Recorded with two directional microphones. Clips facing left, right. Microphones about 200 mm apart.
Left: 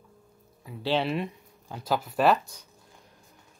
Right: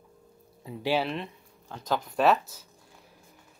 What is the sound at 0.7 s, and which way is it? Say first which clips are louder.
Speech: right 3 dB; 25° right (ahead or behind).